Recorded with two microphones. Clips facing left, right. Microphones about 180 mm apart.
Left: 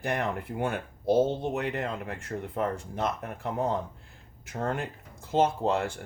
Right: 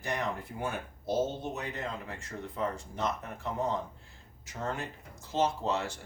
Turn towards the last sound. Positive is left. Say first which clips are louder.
# left 4 dB
turn(degrees=55)  # may be behind; listen again after turning